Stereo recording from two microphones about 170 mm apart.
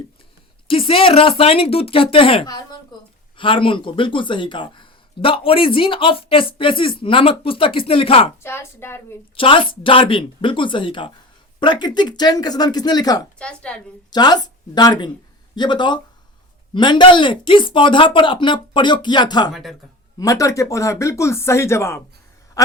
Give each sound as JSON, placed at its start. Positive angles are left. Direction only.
{"t": 0.7, "sound": "speech", "side_deg": 30}
{"t": 8.4, "sound": "speech", "side_deg": 15}
{"t": 9.3, "sound": "speech", "side_deg": 30}
{"t": 13.4, "sound": "a woman's voice", "side_deg": 5}
{"t": 14.1, "sound": "speech", "side_deg": 25}
{"t": 22.6, "sound": "a sound", "side_deg": 20}